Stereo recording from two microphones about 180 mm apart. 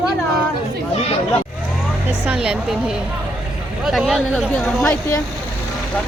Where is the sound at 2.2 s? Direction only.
5° right (ahead or behind); by 5.2 s 10° left (ahead or behind).